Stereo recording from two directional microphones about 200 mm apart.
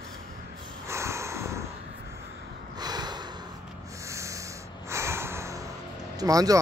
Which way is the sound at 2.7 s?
20° right (ahead or behind).